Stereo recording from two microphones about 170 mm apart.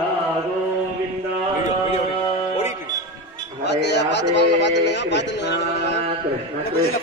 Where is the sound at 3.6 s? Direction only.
80° left.